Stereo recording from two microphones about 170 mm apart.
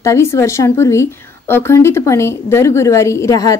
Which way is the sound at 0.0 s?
15° left (ahead or behind).